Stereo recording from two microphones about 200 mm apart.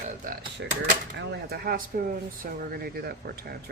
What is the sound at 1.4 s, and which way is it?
Speech, 50° right (ahead or behind).